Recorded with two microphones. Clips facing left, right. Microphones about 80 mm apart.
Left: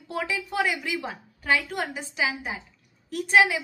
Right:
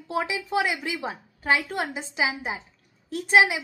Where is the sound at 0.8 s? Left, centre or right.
Right.